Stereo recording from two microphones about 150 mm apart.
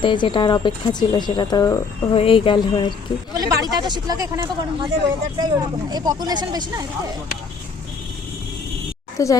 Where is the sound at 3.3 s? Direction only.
25° right (ahead or behind).